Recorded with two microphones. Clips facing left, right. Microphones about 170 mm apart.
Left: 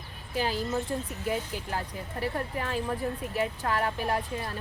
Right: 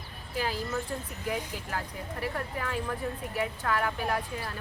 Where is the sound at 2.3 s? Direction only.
25° left (ahead or behind).